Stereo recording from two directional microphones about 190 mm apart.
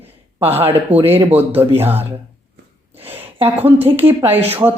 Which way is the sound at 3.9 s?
10° right (ahead or behind).